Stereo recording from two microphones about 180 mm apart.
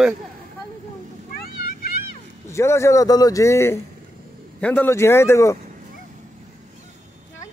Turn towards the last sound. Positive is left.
turn(degrees=15)  # may be behind; listen again after turning